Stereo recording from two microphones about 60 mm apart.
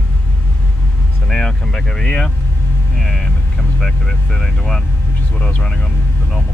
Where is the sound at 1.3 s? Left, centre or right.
Centre.